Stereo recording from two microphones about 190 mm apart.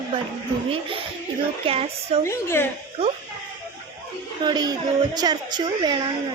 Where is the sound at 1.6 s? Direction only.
30° right (ahead or behind).